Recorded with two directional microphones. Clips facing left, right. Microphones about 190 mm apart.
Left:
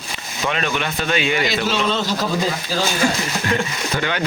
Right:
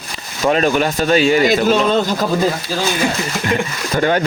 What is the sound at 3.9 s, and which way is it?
Speech, 40° right (ahead or behind).